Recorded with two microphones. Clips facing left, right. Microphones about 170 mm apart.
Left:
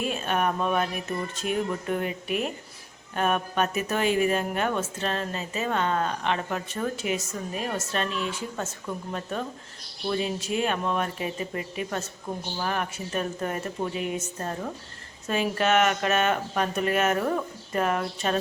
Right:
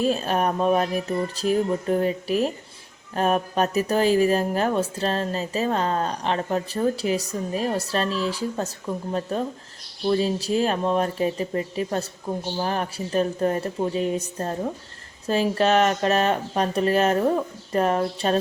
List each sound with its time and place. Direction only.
0.0 s speech: 35° right (ahead or behind)